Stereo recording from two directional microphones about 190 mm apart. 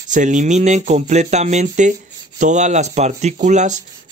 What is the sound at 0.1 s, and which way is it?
Speech, 40° right (ahead or behind).